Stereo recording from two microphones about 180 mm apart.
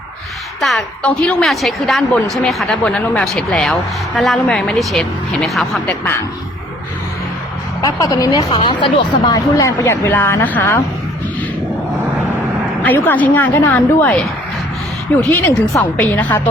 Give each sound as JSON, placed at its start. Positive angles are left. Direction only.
{"t": 0.6, "sound": "a woman's voice", "side_deg": 0}
{"t": 7.8, "sound": "speech", "side_deg": 20}
{"t": 12.8, "sound": "speech", "side_deg": 10}